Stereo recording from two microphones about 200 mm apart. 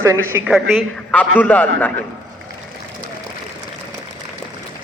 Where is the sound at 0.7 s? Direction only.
5° left (ahead or behind).